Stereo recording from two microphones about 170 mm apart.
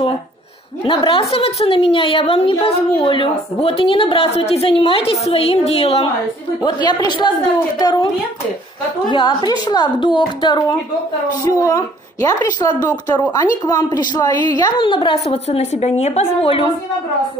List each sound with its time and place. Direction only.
0.8 s a woman's voice: 30° left (ahead or behind)
6.6 s a woman's voice: 25° left (ahead or behind)
9.1 s a woman's voice: 25° left (ahead or behind)